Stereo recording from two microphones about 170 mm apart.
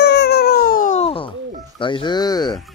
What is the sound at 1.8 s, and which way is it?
Speech, 30° left (ahead or behind).